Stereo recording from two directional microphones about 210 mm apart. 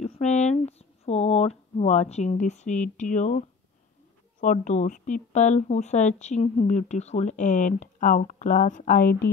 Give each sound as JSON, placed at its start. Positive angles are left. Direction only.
{"t": 0.0, "sound": "speech", "side_deg": 30}